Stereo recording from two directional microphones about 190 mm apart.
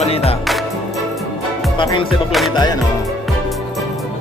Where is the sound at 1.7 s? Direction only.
25° left (ahead or behind).